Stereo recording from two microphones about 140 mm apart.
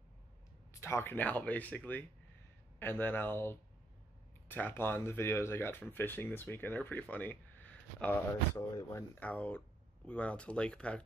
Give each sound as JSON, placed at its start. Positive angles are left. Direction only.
{"t": 0.7, "sound": "speech", "side_deg": 20}